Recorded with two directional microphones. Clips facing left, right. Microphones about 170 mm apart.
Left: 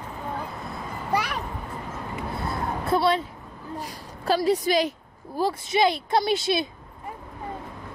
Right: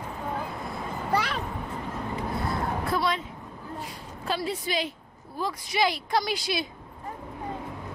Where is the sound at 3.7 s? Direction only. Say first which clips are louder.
Left 4 dB; 40° left (ahead or behind).